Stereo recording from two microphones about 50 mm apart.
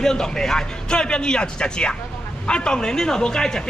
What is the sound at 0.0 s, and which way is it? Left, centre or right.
Speech, centre.